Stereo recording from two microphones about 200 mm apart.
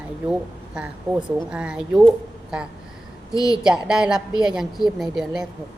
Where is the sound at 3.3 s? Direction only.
20° left (ahead or behind).